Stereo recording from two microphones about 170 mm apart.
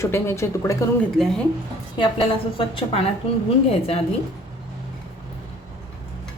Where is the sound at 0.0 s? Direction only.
15° left (ahead or behind).